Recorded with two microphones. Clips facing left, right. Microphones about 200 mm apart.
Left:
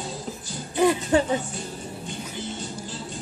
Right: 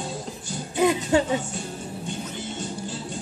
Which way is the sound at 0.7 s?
20° right (ahead or behind).